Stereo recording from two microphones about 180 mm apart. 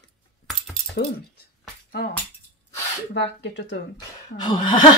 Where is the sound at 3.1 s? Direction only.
75° left (ahead or behind).